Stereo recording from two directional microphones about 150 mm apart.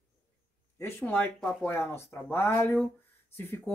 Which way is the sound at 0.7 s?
15° left (ahead or behind).